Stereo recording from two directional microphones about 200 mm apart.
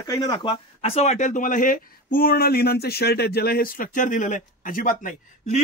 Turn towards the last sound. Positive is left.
turn(degrees=40)  # may be behind; listen again after turning